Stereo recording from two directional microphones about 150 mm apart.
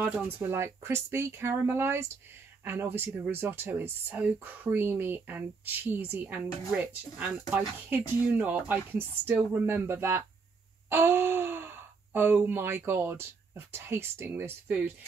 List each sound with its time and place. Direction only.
0.0 s speech: 15° right (ahead or behind)